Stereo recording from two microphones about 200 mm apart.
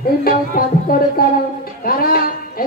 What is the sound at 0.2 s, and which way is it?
Music, 50° left (ahead or behind).